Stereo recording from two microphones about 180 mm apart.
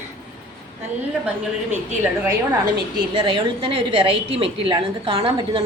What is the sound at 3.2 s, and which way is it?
A woman's voice, 25° right (ahead or behind).